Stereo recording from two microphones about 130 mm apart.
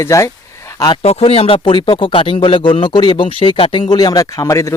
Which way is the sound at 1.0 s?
55° left (ahead or behind).